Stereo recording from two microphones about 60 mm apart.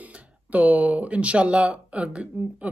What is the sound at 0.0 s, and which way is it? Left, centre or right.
Speech, right.